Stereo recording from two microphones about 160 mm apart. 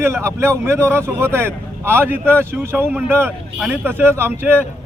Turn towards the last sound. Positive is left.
turn(degrees=-15)  # may be behind; listen again after turning